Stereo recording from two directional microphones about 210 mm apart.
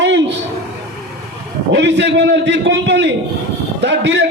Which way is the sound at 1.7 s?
55° right (ahead or behind).